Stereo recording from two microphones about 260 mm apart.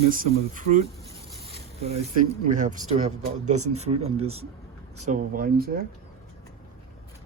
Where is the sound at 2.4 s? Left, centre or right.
Right.